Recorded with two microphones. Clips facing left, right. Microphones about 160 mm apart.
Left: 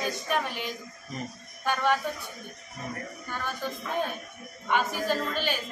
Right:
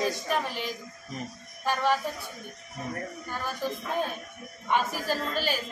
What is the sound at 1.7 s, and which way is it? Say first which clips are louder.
Speech: even; centre (ahead or behind).